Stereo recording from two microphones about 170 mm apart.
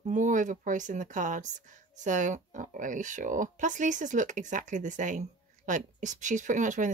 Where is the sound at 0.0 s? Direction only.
50° right (ahead or behind).